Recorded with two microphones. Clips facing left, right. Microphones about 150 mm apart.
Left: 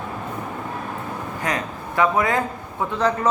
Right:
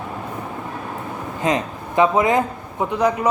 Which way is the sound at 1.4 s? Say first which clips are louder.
Right 7 dB; 20° right (ahead or behind).